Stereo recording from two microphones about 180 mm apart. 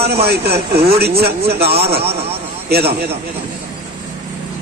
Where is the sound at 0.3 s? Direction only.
65° right (ahead or behind).